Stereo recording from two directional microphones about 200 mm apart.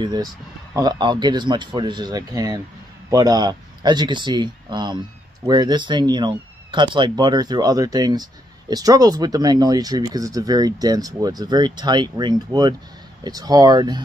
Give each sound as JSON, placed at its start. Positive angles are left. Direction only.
{"t": 0.0, "sound": "speech", "side_deg": -20}